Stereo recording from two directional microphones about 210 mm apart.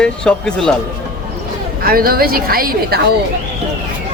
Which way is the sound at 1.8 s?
45° right (ahead or behind).